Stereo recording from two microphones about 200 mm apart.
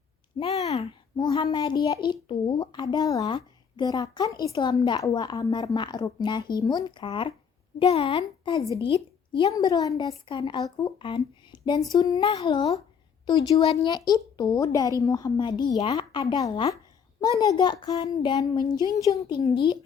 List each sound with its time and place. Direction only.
0.3 s a child's voice: 30° left (ahead or behind)